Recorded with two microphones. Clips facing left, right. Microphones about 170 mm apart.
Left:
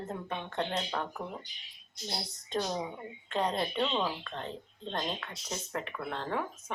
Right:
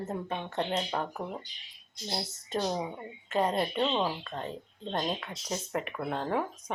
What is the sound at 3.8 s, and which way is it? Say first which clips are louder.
Speech: right 2 dB; 20° right (ahead or behind).